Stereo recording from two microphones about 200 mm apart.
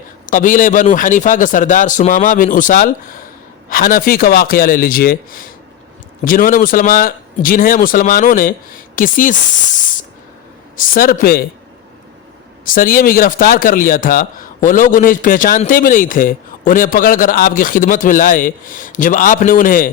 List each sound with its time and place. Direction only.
0.3 s a man's voice: 40° left (ahead or behind)
10.8 s a man's voice: 45° left (ahead or behind)
12.6 s a man's voice: 45° left (ahead or behind)